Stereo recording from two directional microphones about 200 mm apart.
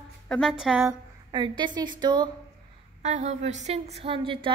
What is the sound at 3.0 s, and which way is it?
A woman's voice, 35° right (ahead or behind).